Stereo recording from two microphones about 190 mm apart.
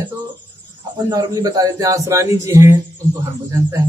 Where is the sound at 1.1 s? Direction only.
20° right (ahead or behind).